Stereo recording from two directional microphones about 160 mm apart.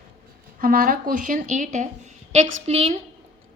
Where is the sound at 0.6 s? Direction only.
60° right (ahead or behind); by 3.0 s 40° right (ahead or behind).